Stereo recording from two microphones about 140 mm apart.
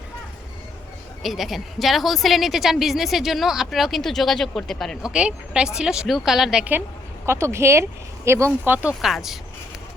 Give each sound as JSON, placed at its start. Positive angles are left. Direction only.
{"t": 1.2, "sound": "a woman's voice", "side_deg": 0}